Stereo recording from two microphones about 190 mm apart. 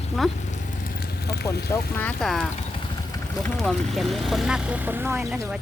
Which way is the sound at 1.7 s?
10° left (ahead or behind).